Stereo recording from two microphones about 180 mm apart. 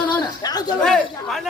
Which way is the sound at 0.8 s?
5° left (ahead or behind).